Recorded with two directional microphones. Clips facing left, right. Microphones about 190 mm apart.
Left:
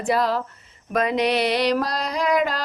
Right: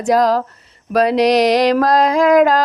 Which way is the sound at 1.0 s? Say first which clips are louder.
Right 8 dB; 85° right.